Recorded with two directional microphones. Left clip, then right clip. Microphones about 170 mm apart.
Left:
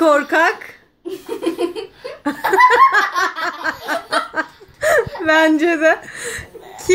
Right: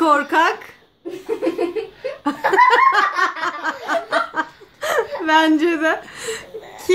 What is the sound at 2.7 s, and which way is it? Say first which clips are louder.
Speech: left 2 dB; 15° left (ahead or behind).